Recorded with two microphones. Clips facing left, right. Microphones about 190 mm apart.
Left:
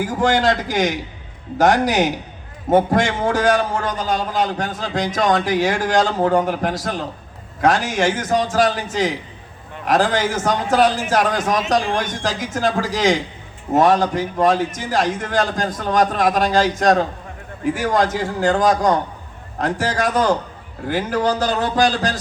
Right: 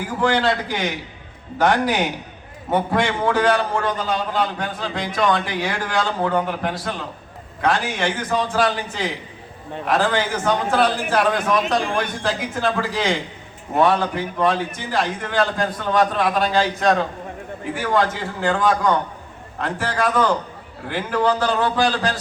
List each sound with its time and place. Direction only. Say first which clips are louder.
0.2 s a man's voice: left 1 dB; 45° left (ahead or behind)